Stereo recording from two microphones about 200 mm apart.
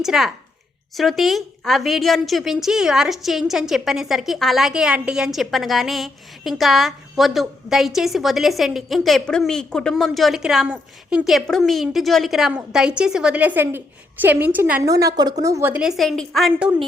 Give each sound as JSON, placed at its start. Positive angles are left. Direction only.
{"t": 0.0, "sound": "a woman's voice", "side_deg": 0}